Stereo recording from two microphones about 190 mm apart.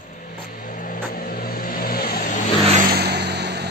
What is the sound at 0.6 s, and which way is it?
Vehicle, 45° left (ahead or behind).